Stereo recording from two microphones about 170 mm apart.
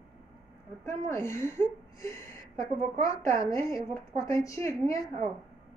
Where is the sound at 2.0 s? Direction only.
20° left (ahead or behind).